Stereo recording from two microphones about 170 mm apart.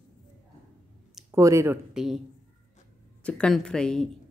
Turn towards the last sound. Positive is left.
turn(degrees=5)  # may be behind; listen again after turning